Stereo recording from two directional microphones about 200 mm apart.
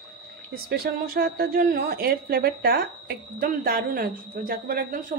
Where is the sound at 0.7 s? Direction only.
50° right (ahead or behind).